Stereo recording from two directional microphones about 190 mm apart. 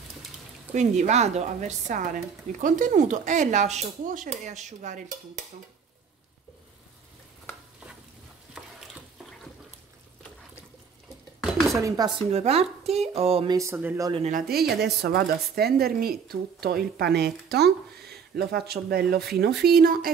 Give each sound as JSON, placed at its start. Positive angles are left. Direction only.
{"t": 0.7, "sound": "a woman's voice", "side_deg": -40}
{"t": 8.9, "sound": "water", "side_deg": 0}
{"t": 11.7, "sound": "chopping", "side_deg": -15}
{"t": 12.3, "sound": "a woman's voice", "side_deg": -30}
{"t": 13.6, "sound": "speech", "side_deg": -15}
{"t": 14.3, "sound": "speech", "side_deg": -55}